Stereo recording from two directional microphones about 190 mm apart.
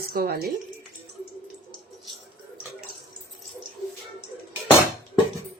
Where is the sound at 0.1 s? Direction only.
55° right (ahead or behind).